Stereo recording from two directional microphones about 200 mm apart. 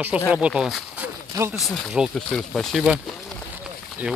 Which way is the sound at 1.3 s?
15° right (ahead or behind).